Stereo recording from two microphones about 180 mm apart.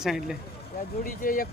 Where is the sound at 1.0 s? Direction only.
50° left (ahead or behind).